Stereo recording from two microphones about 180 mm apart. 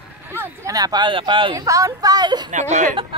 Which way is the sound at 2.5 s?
40° right (ahead or behind).